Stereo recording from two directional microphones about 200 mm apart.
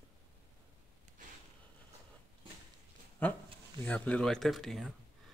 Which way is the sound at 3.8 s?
5° left (ahead or behind).